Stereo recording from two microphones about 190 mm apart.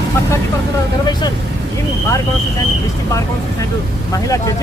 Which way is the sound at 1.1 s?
20° left (ahead or behind).